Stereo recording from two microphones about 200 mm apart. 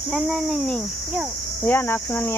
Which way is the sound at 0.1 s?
Centre (ahead or behind).